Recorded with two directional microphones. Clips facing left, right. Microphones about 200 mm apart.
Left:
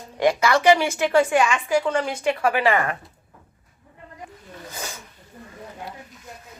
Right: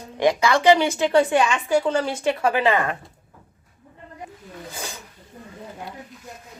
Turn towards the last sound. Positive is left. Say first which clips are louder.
# even
turn(degrees=-15)  # may be behind; listen again after turning